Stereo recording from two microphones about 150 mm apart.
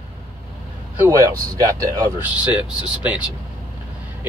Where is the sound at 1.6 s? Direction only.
20° right (ahead or behind).